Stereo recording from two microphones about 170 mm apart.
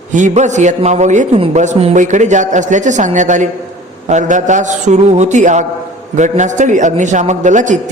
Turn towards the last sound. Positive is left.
turn(degrees=-45)  # may be behind; listen again after turning